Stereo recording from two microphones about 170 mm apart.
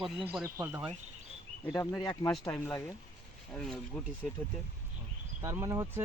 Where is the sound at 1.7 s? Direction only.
20° left (ahead or behind).